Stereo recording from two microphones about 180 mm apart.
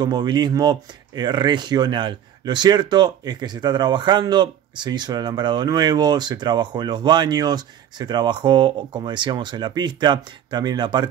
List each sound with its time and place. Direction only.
0.0 s speech: 25° right (ahead or behind)